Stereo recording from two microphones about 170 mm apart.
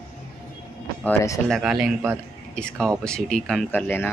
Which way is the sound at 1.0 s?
10° left (ahead or behind).